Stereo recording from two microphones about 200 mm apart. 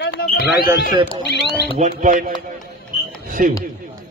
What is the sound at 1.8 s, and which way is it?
Speech, 40° right (ahead or behind).